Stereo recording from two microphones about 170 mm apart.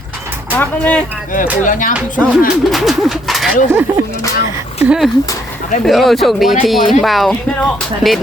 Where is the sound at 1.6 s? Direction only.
50° left (ahead or behind).